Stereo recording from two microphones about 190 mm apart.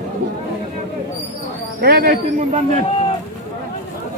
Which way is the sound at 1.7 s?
55° right (ahead or behind).